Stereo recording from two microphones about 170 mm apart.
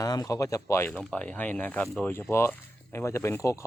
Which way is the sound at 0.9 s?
5° left (ahead or behind).